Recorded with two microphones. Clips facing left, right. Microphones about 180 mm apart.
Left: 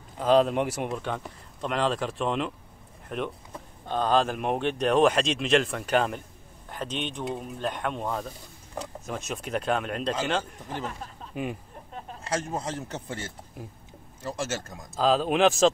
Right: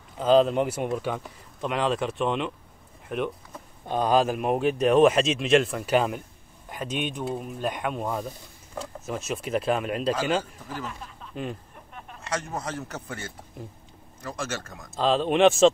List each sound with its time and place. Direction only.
0.2 s speech: centre (ahead or behind)
11.9 s speech: 30° left (ahead or behind)
15.0 s speech: 5° left (ahead or behind)